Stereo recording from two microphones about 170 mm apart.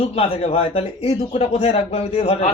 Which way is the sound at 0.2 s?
35° left (ahead or behind).